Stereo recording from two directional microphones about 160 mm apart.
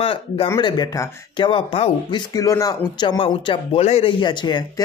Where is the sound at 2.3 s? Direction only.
20° left (ahead or behind).